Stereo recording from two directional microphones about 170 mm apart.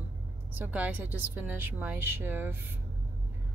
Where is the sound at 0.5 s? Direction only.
10° right (ahead or behind).